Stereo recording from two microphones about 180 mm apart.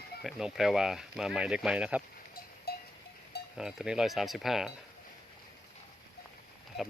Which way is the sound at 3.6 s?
5° right (ahead or behind).